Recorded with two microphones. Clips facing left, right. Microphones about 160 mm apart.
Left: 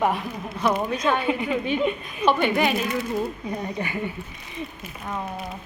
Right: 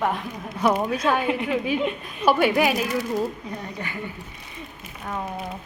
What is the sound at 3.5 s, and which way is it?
Speech, 15° left (ahead or behind).